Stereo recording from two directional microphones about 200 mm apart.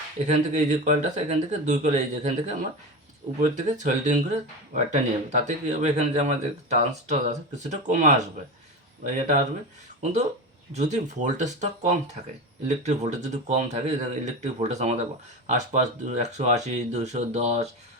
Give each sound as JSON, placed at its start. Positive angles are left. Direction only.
{"t": 0.3, "sound": "speech", "side_deg": -35}